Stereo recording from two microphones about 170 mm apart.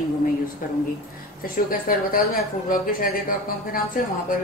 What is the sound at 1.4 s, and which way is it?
Speech, 60° left (ahead or behind).